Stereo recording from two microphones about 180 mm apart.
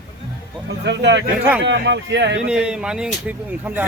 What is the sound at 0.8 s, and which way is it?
Speech, 70° right (ahead or behind).